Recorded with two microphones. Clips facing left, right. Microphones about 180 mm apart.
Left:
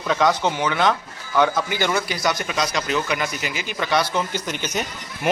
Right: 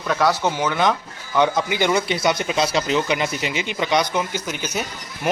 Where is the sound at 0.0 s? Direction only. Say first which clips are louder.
Even; 5° right (ahead or behind).